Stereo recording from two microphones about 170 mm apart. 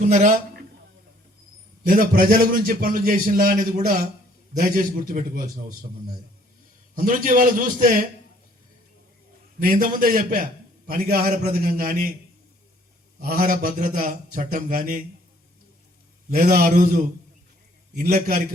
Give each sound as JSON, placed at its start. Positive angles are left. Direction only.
{"t": 0.0, "sound": "a man's voice", "side_deg": -45}
{"t": 1.9, "sound": "a man's voice", "side_deg": -55}
{"t": 6.9, "sound": "a man's voice", "side_deg": -50}
{"t": 9.6, "sound": "a man's voice", "side_deg": -55}
{"t": 13.1, "sound": "a man's voice", "side_deg": -60}
{"t": 16.3, "sound": "a man's voice", "side_deg": -60}